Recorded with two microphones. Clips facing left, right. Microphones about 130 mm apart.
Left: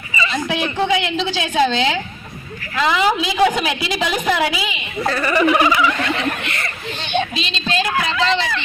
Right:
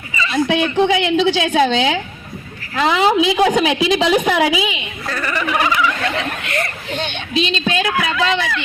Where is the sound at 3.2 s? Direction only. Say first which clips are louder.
Right 3 dB; 20° right (ahead or behind).